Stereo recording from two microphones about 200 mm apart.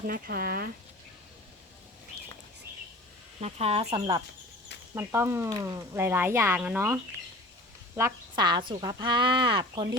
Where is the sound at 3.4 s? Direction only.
30° right (ahead or behind).